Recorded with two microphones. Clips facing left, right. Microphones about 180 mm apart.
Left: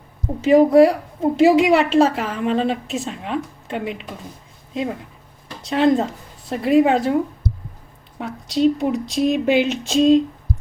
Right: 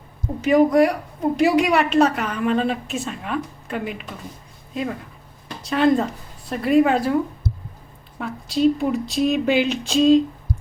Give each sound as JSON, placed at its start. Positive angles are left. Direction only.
{"t": 0.4, "sound": "a woman's voice", "side_deg": 25}
{"t": 8.2, "sound": "a woman's voice", "side_deg": 20}
{"t": 9.0, "sound": "speech", "side_deg": 0}